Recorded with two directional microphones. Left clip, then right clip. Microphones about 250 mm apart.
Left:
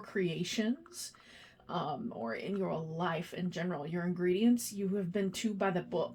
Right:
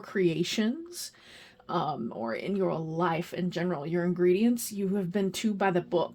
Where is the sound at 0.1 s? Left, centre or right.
Right.